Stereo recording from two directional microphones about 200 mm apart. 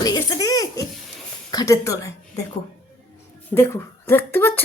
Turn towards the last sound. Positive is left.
turn(degrees=10)  # may be behind; listen again after turning